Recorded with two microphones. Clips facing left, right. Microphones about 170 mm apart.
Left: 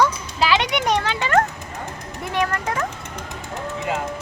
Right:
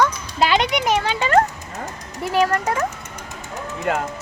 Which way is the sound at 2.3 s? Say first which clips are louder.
Right 4 dB; 35° right (ahead or behind).